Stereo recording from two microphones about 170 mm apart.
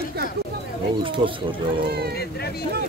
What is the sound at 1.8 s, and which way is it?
Speech, 70° right (ahead or behind).